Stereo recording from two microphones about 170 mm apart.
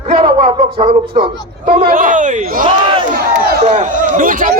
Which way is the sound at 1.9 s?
50° right (ahead or behind).